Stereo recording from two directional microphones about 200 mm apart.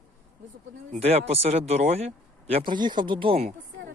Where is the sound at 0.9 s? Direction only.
30° right (ahead or behind).